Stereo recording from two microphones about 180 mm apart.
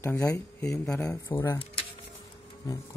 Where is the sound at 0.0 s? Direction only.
10° left (ahead or behind).